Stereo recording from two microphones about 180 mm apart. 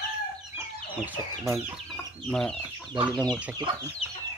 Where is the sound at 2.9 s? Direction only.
25° right (ahead or behind).